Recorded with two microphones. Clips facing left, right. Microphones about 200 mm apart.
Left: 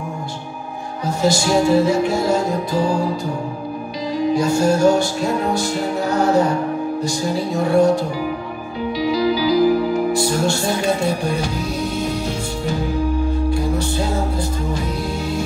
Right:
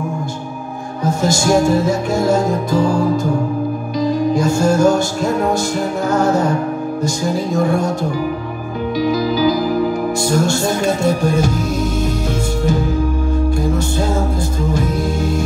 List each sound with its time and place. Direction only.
1.0 s music: 45° right (ahead or behind)
4.0 s music: 45° right (ahead or behind)
9.0 s speech: 45° right (ahead or behind)
14.7 s music: 45° right (ahead or behind)